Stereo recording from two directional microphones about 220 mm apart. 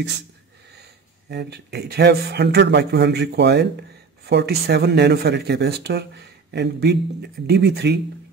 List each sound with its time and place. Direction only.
1.3 s speech: 50° right (ahead or behind)